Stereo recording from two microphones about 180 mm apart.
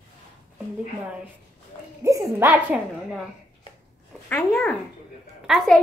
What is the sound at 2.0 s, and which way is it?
Speech, 15° right (ahead or behind).